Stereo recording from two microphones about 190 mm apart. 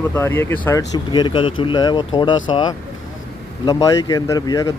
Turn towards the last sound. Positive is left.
turn(degrees=20)  # may be behind; listen again after turning